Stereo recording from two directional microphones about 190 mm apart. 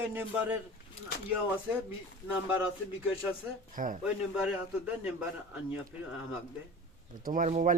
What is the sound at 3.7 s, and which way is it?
Speech, 45° right (ahead or behind).